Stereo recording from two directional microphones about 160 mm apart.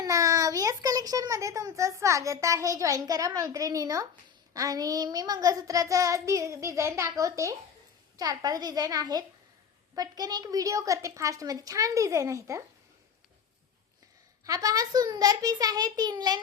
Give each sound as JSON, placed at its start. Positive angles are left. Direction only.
{"t": 0.0, "sound": "a child's voice", "side_deg": -20}
{"t": 14.4, "sound": "a child's voice", "side_deg": -20}